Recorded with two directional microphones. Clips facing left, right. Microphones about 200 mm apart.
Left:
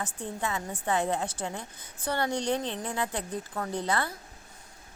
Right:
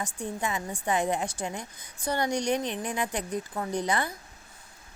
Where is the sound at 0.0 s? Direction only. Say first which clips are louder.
Right 1 dB; 15° right (ahead or behind).